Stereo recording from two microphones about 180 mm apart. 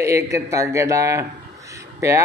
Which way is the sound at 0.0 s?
15° right (ahead or behind).